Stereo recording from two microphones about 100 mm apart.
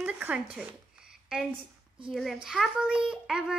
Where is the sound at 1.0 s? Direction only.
5° right (ahead or behind).